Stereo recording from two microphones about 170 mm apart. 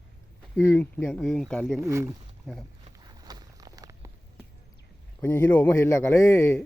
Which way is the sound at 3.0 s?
25° right (ahead or behind).